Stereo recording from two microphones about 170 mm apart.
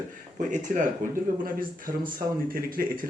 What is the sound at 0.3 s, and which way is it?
Speech, 45° right (ahead or behind).